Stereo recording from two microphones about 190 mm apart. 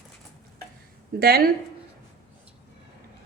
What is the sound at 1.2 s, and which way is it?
Speech, 55° right (ahead or behind).